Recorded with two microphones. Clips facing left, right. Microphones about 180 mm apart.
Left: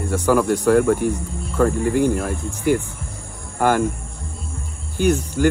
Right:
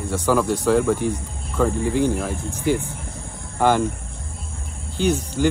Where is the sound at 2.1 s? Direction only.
5° left (ahead or behind).